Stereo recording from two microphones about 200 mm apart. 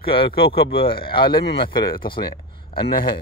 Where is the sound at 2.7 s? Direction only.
50° left (ahead or behind).